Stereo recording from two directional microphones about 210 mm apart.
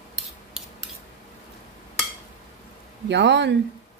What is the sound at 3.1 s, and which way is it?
Speech, 55° right (ahead or behind).